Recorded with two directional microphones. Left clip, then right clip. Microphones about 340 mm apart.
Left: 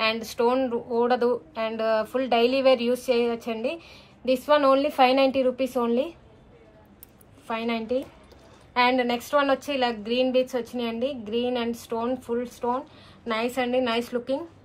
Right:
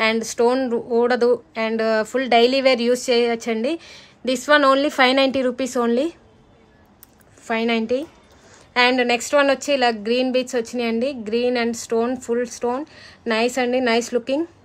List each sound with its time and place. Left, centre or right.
0.0 s speech: right
7.4 s speech: right